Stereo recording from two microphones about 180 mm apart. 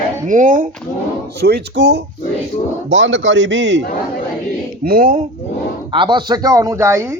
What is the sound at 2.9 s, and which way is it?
Speech, 90° right.